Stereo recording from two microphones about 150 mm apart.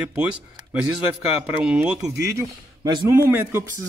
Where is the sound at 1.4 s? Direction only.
10° right (ahead or behind).